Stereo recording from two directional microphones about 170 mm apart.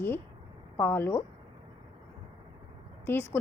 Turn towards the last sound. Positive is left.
turn(degrees=10)  # may be behind; listen again after turning